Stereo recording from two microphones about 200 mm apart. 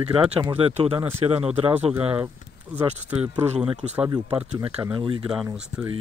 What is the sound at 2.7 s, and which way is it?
Speech, 5° right (ahead or behind).